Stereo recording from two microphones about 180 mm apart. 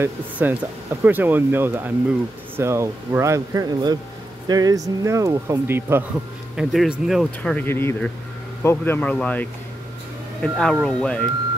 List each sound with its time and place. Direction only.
0.0 s speech: 10° right (ahead or behind)
6.5 s speech: centre (ahead or behind)